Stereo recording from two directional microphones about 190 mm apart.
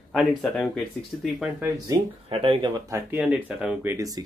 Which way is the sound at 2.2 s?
30° right (ahead or behind).